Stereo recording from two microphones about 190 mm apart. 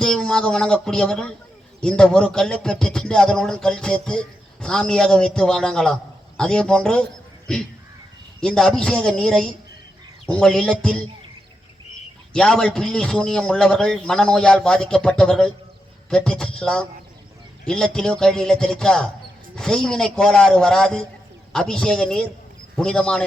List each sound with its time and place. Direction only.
0.0 s speech: 5° left (ahead or behind)
12.3 s speech: 5° left (ahead or behind)